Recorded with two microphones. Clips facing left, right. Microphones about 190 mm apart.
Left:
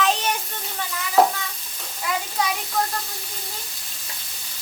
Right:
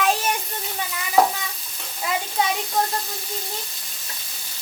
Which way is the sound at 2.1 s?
25° right (ahead or behind).